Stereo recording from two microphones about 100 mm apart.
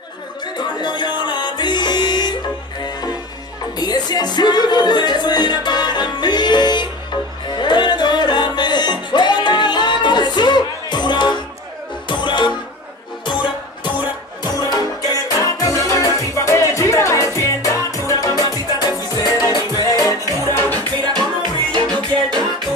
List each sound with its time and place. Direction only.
0.6 s music: 50° left (ahead or behind)
14.4 s music: 40° left (ahead or behind)
20.7 s music: 45° right (ahead or behind)